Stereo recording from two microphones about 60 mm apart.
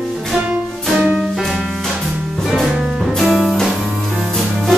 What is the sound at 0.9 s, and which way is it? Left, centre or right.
Music, centre.